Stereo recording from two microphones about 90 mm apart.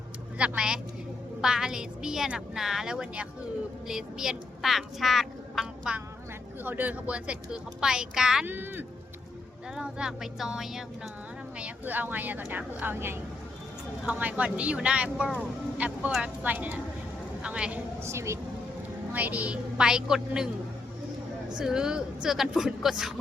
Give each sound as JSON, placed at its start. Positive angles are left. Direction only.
{"t": 0.3, "sound": "speech", "side_deg": -10}
{"t": 6.7, "sound": "speech", "side_deg": -20}
{"t": 8.4, "sound": "speech", "side_deg": -20}
{"t": 9.7, "sound": "speech", "side_deg": -10}
{"t": 11.6, "sound": "speech", "side_deg": -20}
{"t": 14.0, "sound": "speech", "side_deg": -15}
{"t": 18.0, "sound": "speech", "side_deg": -30}
{"t": 19.1, "sound": "speech", "side_deg": -15}
{"t": 21.6, "sound": "speech", "side_deg": -5}